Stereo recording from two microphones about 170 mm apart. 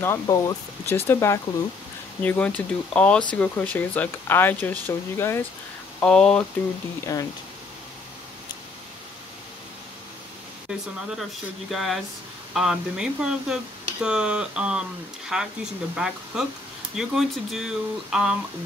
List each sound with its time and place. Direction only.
0.0 s speech: 20° left (ahead or behind)
7.1 s speech: 20° left (ahead or behind)
10.7 s speech: 5° right (ahead or behind)